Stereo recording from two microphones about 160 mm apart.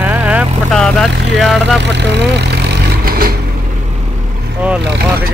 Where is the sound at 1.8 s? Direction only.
90° right; by 3.4 s 70° right (ahead or behind).